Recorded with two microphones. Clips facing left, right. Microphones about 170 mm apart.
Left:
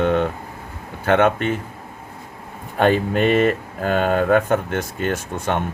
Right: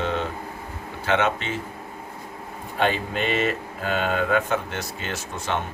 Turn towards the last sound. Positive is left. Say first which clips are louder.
# left 5 dB
turn(degrees=55)  # may be behind; listen again after turning